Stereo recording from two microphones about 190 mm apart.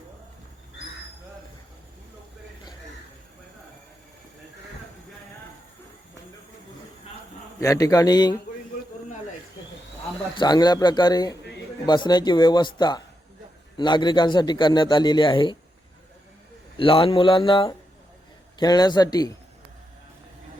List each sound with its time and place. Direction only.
7.6 s a man's voice: 15° left (ahead or behind)
10.3 s a man's voice: 20° left (ahead or behind)
16.7 s a man's voice: 25° left (ahead or behind)